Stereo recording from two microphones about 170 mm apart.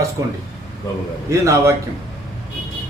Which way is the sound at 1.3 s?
15° right (ahead or behind).